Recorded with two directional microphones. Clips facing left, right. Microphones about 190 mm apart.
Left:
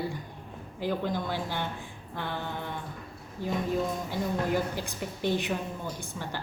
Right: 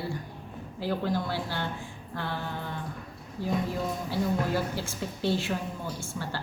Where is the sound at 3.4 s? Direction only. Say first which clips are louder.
Left 1 dB; 20° left (ahead or behind).